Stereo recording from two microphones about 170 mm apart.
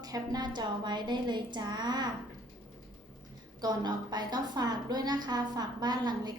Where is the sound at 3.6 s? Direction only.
25° right (ahead or behind).